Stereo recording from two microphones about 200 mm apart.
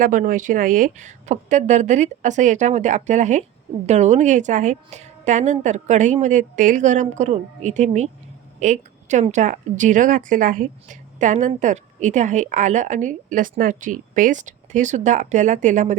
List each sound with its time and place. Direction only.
0.0 s a woman's voice: 40° right (ahead or behind)